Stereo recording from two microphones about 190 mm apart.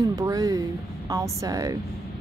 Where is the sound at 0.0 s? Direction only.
20° right (ahead or behind).